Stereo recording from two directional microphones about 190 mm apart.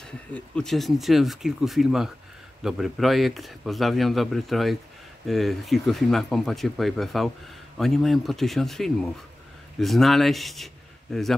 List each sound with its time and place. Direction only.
0.3 s speech: 5° left (ahead or behind)